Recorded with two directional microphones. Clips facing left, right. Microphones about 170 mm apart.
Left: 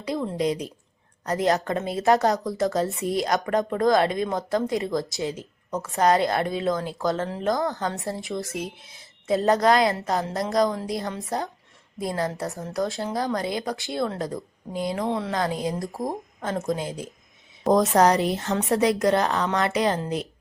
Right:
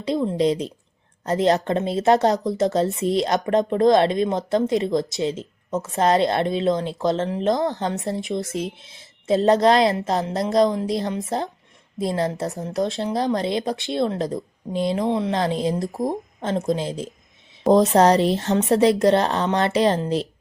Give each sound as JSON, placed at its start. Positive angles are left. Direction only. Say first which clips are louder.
{"t": 0.0, "sound": "speech", "louder": "right 5 dB", "side_deg": -20}